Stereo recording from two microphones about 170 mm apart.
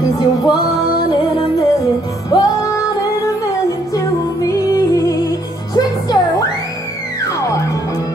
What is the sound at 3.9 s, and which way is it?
Music, 20° left (ahead or behind).